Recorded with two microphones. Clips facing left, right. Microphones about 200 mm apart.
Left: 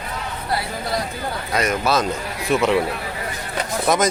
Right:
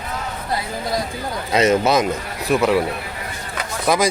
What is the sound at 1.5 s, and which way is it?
Speech, 25° right (ahead or behind).